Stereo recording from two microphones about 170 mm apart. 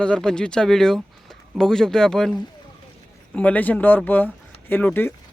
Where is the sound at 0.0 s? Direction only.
5° left (ahead or behind).